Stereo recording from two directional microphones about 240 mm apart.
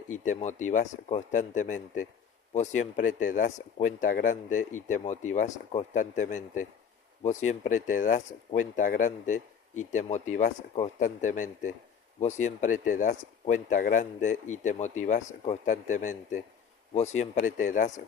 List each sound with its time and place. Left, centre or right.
0.3 s speech: left